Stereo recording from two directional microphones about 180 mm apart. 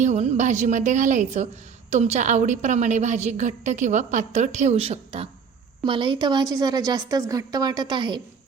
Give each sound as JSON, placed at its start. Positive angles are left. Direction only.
{"t": 0.0, "sound": "a woman's voice", "side_deg": -40}